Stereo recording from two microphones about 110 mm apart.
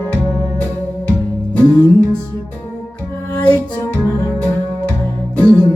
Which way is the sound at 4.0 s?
25° left (ahead or behind).